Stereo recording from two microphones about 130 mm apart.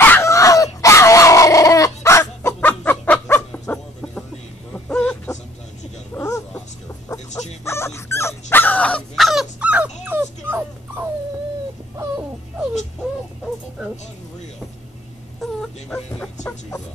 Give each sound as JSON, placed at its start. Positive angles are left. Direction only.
{"t": 0.0, "sound": "dog", "side_deg": 20}
{"t": 2.7, "sound": "chicken", "side_deg": 10}
{"t": 4.7, "sound": "a sound", "side_deg": 10}
{"t": 6.1, "sound": "a sound", "side_deg": 20}
{"t": 7.1, "sound": "music", "side_deg": 25}
{"t": 7.6, "sound": "dog", "side_deg": 20}
{"t": 15.4, "sound": "wail", "side_deg": 5}